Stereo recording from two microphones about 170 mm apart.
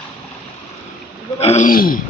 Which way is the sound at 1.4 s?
40° left (ahead or behind).